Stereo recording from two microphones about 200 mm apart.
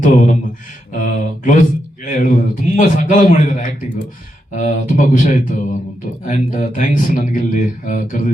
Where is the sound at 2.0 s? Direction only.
40° left (ahead or behind).